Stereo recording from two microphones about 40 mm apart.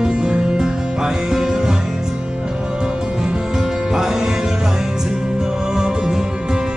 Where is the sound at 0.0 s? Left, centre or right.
Centre.